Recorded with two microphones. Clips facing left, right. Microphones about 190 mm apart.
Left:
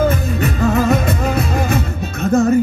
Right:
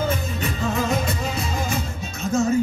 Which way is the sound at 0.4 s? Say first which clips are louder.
Left 8 dB; 65° left (ahead or behind).